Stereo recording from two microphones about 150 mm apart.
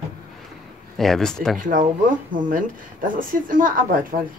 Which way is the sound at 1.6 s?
60° right (ahead or behind).